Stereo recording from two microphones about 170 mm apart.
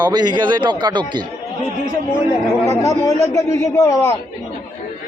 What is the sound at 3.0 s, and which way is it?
A man's voice, 20° left (ahead or behind).